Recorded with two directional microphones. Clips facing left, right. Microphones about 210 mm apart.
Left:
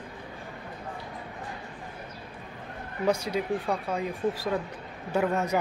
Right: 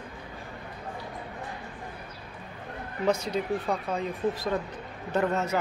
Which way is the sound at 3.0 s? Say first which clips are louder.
Even; 10° left (ahead or behind).